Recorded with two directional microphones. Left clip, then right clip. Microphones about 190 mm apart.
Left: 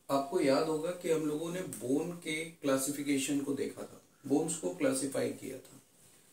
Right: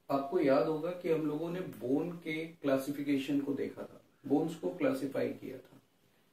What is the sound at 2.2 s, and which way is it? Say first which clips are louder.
Speech: left 1 dB; 15° left (ahead or behind).